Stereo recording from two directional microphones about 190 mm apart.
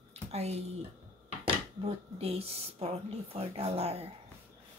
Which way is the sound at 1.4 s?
30° right (ahead or behind).